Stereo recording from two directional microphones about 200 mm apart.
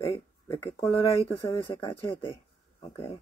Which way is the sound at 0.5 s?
15° left (ahead or behind).